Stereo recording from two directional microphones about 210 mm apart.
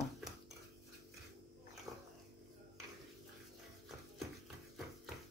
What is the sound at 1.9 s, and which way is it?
Dog, 20° right (ahead or behind).